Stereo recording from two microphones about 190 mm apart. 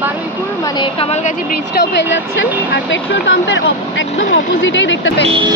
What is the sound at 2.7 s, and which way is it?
Speech, 70° left (ahead or behind).